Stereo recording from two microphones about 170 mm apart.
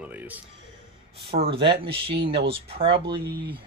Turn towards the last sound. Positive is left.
turn(degrees=-35)  # may be behind; listen again after turning